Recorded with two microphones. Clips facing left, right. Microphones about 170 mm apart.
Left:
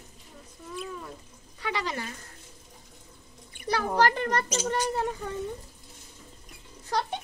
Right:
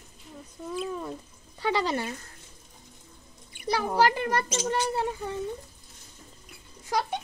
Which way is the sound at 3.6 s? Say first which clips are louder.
Right 1 dB; 10° right (ahead or behind).